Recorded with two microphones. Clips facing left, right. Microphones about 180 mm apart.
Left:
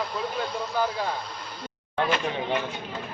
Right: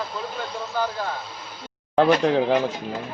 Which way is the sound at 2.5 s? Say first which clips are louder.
Right 7 dB; 35° right (ahead or behind).